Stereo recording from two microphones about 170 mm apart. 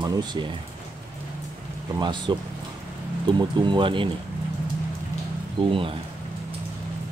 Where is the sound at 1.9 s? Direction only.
25° right (ahead or behind).